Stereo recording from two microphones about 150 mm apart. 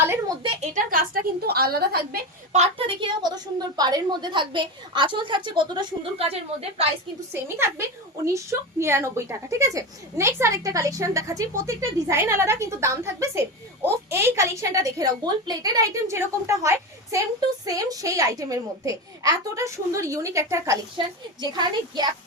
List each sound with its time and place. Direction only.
0.4 s a woman's voice: 50° right (ahead or behind); by 2.2 s 90° right
2.5 s a woman's voice: 45° right (ahead or behind)
6.2 s a woman's voice: 40° right (ahead or behind)
7.4 s a woman's voice: 15° right (ahead or behind)
21.0 s a woman's voice: 30° right (ahead or behind)